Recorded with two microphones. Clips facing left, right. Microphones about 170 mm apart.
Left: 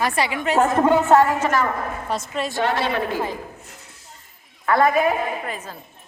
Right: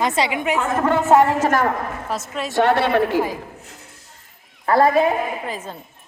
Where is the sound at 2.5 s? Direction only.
65° right (ahead or behind).